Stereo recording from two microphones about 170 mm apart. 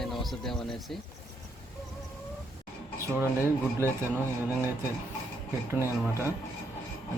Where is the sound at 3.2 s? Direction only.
10° right (ahead or behind).